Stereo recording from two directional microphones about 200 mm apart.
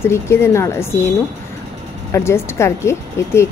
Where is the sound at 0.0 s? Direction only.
10° left (ahead or behind).